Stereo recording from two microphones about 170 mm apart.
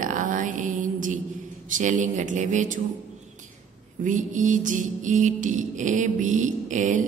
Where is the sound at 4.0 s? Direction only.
50° right (ahead or behind).